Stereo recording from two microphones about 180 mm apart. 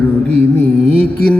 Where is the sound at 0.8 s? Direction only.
35° right (ahead or behind).